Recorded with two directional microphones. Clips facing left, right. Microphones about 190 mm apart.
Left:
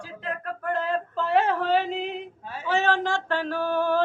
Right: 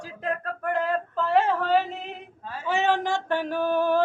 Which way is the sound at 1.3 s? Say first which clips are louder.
Even; centre (ahead or behind).